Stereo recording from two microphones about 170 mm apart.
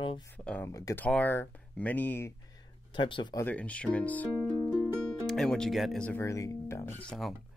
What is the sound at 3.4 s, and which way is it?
Speech, 10° left (ahead or behind).